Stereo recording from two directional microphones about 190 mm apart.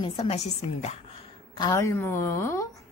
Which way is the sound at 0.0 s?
30° left (ahead or behind).